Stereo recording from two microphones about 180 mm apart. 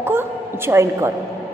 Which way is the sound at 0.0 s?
15° right (ahead or behind).